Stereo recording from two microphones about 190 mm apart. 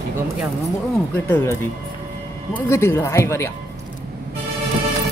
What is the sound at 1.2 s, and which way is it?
Speech, 10° left (ahead or behind).